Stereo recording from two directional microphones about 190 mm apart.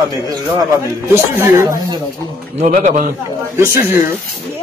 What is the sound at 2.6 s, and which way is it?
Speech, 40° right (ahead or behind).